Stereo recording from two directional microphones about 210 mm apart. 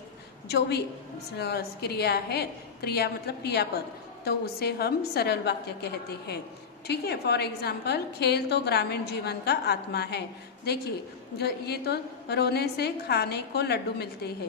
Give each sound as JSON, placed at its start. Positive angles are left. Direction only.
{"t": 0.5, "sound": "a woman's voice", "side_deg": 50}